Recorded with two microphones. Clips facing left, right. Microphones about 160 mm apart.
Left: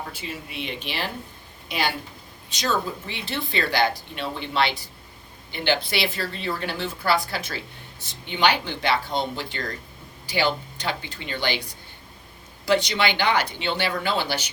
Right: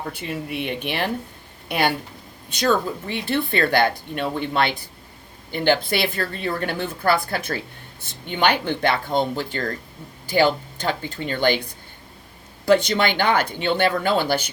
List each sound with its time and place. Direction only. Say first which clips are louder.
0.1 s speech: right 7 dB; 60° right (ahead or behind)
12.6 s speech: right 4 dB; 50° right (ahead or behind)